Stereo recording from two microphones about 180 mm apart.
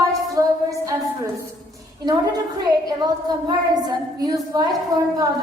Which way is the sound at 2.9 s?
20° right (ahead or behind).